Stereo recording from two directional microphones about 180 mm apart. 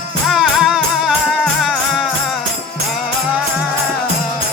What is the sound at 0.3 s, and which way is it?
Music, centre (ahead or behind).